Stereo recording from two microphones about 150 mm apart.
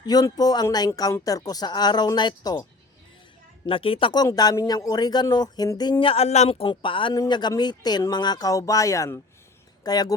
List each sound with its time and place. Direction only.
0.0 s speech: 25° left (ahead or behind)
3.7 s speech: 35° left (ahead or behind)